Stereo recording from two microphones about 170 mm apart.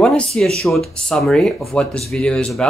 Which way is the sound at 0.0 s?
5° left (ahead or behind).